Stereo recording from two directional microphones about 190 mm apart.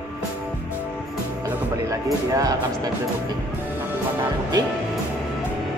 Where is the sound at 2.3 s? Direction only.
20° right (ahead or behind).